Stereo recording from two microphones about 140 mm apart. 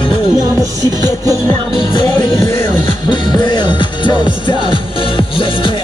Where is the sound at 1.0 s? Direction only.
25° right (ahead or behind).